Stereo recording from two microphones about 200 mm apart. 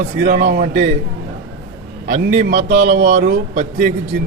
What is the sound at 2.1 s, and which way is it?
A man's voice, 45° right (ahead or behind).